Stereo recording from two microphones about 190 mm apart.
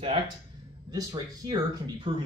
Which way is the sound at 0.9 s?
20° right (ahead or behind).